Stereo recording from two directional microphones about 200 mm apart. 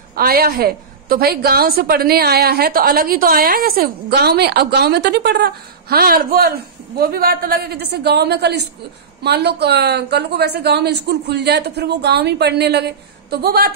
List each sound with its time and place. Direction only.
0.1 s a woman's voice: 50° right (ahead or behind)